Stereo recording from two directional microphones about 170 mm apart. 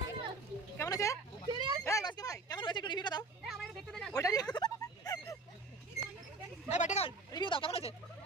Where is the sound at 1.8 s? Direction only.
20° left (ahead or behind).